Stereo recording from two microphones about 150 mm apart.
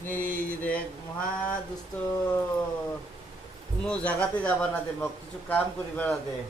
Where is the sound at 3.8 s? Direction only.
10° left (ahead or behind).